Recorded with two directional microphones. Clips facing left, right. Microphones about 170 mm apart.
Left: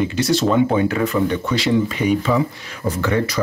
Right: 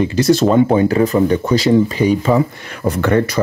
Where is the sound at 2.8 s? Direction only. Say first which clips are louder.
Right 5 dB; 65° right (ahead or behind).